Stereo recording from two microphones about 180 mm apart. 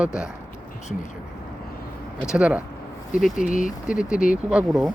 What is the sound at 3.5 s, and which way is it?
Speech, 45° left (ahead or behind).